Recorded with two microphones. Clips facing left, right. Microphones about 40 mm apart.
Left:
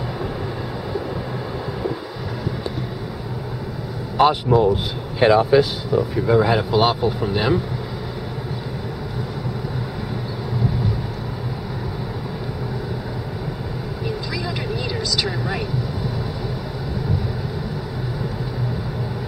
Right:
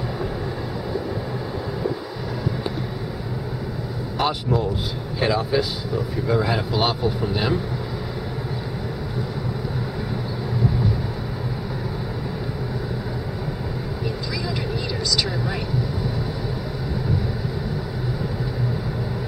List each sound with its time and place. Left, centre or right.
4.3 s speech: left
6.2 s speech: centre